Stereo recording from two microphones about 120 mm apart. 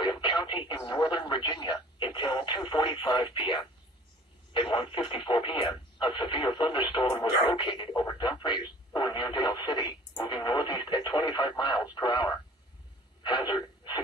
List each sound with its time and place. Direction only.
0.0 s speech: 40° left (ahead or behind)
4.6 s speech: 45° left (ahead or behind)